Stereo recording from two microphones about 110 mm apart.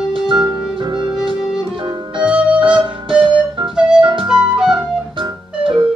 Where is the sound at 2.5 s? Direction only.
45° right (ahead or behind).